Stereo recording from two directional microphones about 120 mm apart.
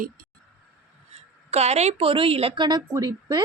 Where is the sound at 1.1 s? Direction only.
60° right (ahead or behind).